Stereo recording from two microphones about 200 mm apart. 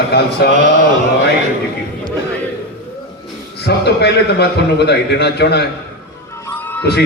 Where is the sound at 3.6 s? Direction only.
55° left (ahead or behind).